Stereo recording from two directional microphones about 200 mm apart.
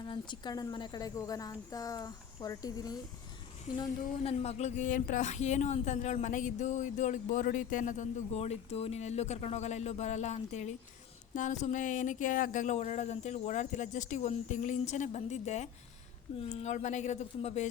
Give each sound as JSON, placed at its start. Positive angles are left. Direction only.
{"t": 0.0, "sound": "a woman's voice", "side_deg": 20}
{"t": 3.8, "sound": "speech", "side_deg": 30}